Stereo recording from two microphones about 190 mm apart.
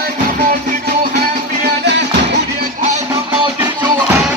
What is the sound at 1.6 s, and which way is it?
Music, 65° right (ahead or behind).